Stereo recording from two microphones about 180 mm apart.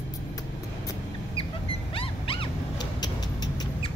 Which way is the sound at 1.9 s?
30° left (ahead or behind).